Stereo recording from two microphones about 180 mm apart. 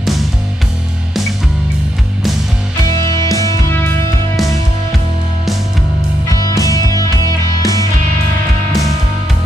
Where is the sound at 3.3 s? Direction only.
20° left (ahead or behind).